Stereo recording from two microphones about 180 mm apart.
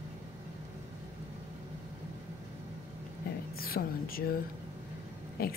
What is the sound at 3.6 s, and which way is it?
Speech, 55° left (ahead or behind).